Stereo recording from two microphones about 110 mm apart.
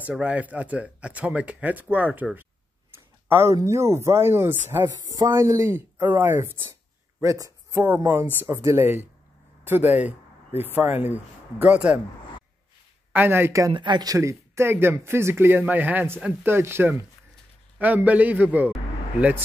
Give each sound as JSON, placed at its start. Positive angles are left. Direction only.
{"t": 0.0, "sound": "speech", "side_deg": -10}
{"t": 3.3, "sound": "speech", "side_deg": -25}
{"t": 7.2, "sound": "speech", "side_deg": -30}
{"t": 13.1, "sound": "speech", "side_deg": -20}
{"t": 13.7, "sound": "speech", "side_deg": -45}